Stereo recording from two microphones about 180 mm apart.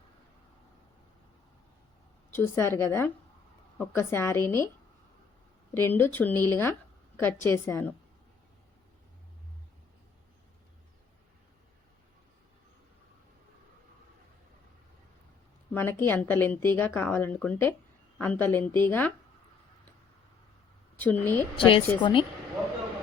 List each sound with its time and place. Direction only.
2.3 s speech: 15° left (ahead or behind)
5.7 s speech: 10° left (ahead or behind)
15.7 s speech: 10° left (ahead or behind)
21.0 s speech: 10° left (ahead or behind)
21.5 s a woman's voice: 30° left (ahead or behind)